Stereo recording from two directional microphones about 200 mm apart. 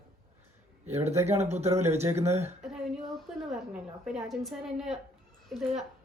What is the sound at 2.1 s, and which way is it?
Speech, 35° right (ahead or behind).